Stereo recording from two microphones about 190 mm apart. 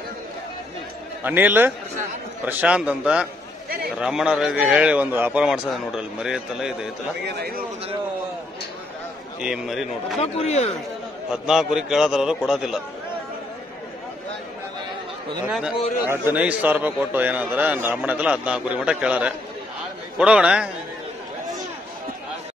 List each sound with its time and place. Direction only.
1.2 s a man's voice: 10° right (ahead or behind)
7.2 s a man's voice: 55° right (ahead or behind)
9.4 s a man's voice: 5° right (ahead or behind)
10.2 s speech: 35° left (ahead or behind)
11.2 s a man's voice: 5° right (ahead or behind)
15.4 s a man's voice: 5° right (ahead or behind)